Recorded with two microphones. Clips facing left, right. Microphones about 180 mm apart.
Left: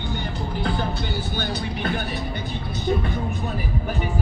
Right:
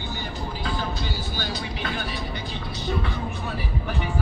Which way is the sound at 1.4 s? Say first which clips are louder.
Left 3 dB; 55° left (ahead or behind).